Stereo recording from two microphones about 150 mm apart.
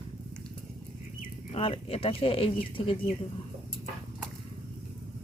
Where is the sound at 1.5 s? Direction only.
40° left (ahead or behind).